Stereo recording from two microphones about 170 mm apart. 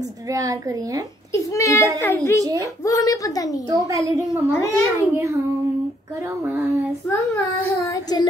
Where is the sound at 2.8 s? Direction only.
20° left (ahead or behind).